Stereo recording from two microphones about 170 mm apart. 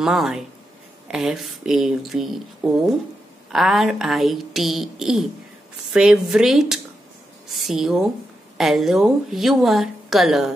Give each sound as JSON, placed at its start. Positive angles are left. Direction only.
{"t": 0.0, "sound": "speech", "side_deg": 0}